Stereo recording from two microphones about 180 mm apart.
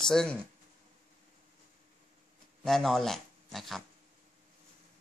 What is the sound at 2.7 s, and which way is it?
Speech, centre (ahead or behind).